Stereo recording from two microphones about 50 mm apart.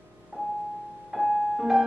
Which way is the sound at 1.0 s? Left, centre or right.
Centre.